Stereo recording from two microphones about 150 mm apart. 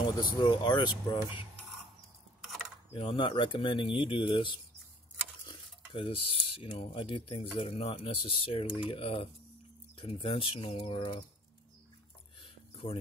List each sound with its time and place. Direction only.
0.2 s speech: 30° left (ahead or behind)
2.9 s speech: 35° left (ahead or behind)
5.9 s speech: 40° left (ahead or behind)
12.4 s a sound: 40° left (ahead or behind)